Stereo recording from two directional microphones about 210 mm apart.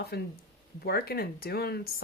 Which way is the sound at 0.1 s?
50° left (ahead or behind).